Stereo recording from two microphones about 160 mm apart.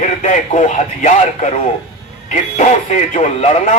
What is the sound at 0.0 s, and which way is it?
Speech, 45° left (ahead or behind).